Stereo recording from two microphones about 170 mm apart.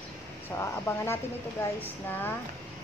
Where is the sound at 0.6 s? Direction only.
15° left (ahead or behind).